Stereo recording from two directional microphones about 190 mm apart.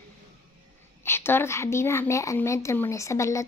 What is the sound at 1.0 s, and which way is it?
A woman's voice, 10° left (ahead or behind).